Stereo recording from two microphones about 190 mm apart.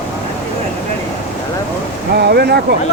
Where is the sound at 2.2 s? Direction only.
60° right (ahead or behind).